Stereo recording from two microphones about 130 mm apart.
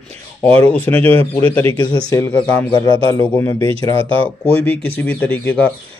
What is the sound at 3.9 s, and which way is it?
Speech, 45° right (ahead or behind).